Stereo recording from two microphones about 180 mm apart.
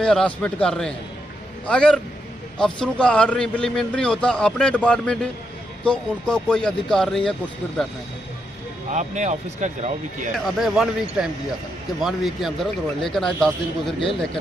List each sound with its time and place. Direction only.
0.0 s a man's voice: 5° left (ahead or behind)
8.9 s speech: 40° right (ahead or behind)
10.4 s a man's voice: centre (ahead or behind)